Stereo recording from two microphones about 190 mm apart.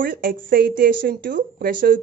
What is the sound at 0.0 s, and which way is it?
A woman's voice, 50° right (ahead or behind).